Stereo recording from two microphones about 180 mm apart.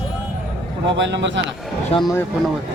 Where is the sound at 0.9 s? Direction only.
75° right (ahead or behind).